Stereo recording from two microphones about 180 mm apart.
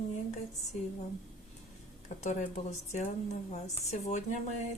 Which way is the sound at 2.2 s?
40° left (ahead or behind).